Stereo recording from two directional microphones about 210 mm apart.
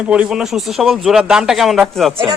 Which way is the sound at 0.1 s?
5° right (ahead or behind).